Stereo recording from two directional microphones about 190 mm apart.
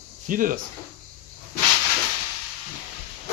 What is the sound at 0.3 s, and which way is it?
Speech, 45° right (ahead or behind).